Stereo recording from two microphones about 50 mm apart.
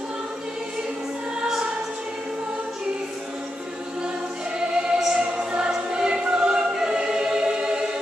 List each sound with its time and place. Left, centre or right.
4.6 s choir: centre